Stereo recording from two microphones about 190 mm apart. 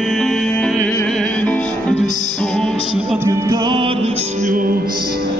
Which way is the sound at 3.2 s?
15° right (ahead or behind).